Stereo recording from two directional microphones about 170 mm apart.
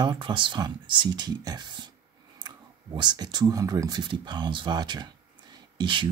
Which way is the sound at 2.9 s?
25° right (ahead or behind).